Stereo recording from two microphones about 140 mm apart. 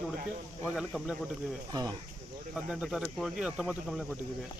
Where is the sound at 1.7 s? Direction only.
25° right (ahead or behind).